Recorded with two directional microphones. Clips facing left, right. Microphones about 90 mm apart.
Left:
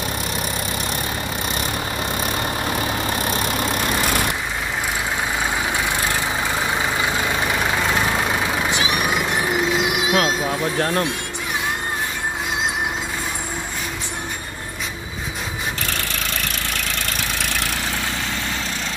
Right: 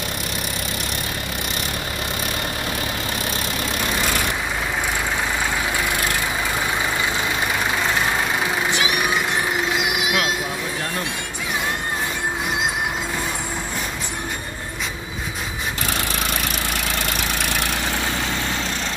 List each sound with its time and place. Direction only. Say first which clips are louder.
9.9 s vehicle: left 3 dB; 30° left (ahead or behind)